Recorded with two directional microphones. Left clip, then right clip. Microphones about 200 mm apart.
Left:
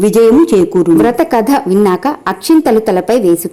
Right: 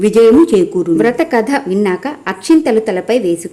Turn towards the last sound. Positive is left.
turn(degrees=20)  # may be behind; listen again after turning